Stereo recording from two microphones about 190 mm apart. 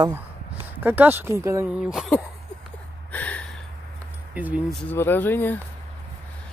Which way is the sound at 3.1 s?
10° left (ahead or behind).